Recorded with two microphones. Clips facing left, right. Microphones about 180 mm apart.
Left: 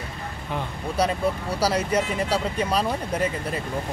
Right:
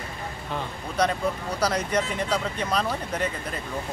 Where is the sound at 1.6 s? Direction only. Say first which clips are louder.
Left 2 dB; 10° left (ahead or behind).